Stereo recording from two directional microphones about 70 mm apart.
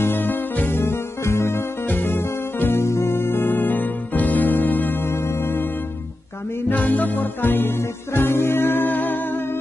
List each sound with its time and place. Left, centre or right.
0.0 s music: left
6.7 s music: left